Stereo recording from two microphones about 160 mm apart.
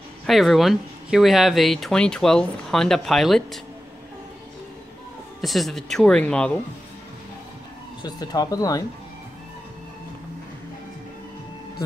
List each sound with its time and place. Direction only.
0.3 s speech: centre (ahead or behind)
5.4 s speech: centre (ahead or behind)
8.0 s speech: 25° left (ahead or behind)